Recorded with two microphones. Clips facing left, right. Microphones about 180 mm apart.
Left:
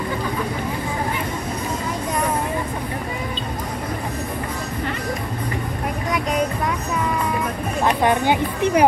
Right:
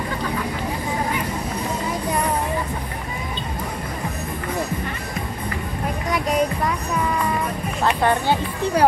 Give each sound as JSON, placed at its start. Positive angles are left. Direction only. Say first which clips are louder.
{"t": 7.8, "sound": "speech", "louder": "left 1 dB", "side_deg": 15}